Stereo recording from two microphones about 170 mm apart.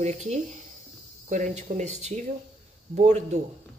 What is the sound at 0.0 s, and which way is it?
Speech, 40° right (ahead or behind).